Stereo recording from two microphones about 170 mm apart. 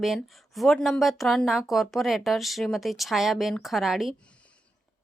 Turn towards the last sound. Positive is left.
turn(degrees=0)  # may be behind; listen again after turning